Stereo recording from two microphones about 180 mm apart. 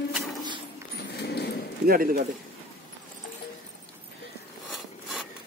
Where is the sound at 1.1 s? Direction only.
65° left (ahead or behind).